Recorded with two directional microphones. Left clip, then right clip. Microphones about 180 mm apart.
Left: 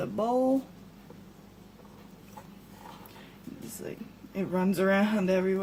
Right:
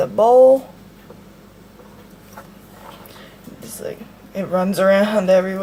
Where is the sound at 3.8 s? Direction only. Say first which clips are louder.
Right 13 dB; 15° right (ahead or behind).